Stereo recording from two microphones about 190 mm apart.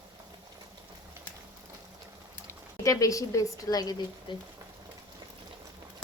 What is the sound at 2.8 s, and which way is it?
A woman's voice, 20° left (ahead or behind).